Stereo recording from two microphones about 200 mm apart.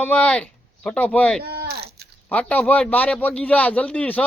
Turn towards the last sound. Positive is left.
turn(degrees=5)  # may be behind; listen again after turning